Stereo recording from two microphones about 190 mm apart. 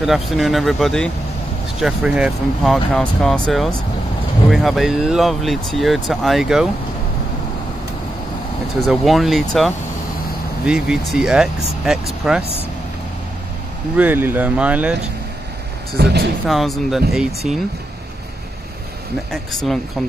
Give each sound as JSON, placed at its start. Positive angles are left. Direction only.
{"t": 0.0, "sound": "speech", "side_deg": 0}
{"t": 8.8, "sound": "speech", "side_deg": 0}
{"t": 13.9, "sound": "speech", "side_deg": -10}
{"t": 16.0, "sound": "speech", "side_deg": -55}
{"t": 16.4, "sound": "speech", "side_deg": 0}
{"t": 19.3, "sound": "speech", "side_deg": 0}